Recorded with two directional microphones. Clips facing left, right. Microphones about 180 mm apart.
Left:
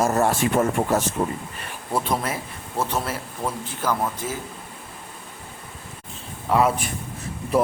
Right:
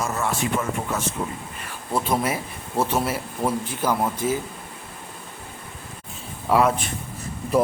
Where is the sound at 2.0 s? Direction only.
5° right (ahead or behind).